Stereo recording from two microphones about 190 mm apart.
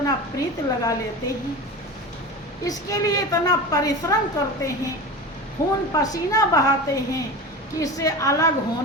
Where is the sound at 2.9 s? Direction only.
20° left (ahead or behind).